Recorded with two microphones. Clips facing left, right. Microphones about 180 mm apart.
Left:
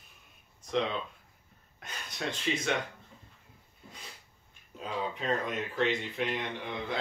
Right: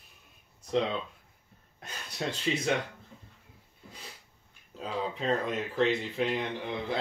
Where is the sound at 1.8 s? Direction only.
30° right (ahead or behind).